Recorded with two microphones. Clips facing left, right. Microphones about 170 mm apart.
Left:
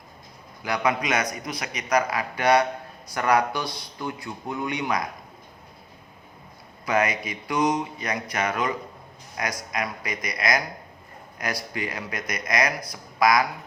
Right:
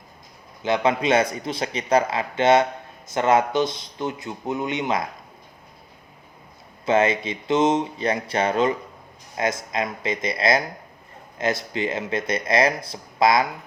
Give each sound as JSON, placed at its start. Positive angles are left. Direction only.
{"t": 0.6, "sound": "speech", "side_deg": -25}
{"t": 6.8, "sound": "speech", "side_deg": -25}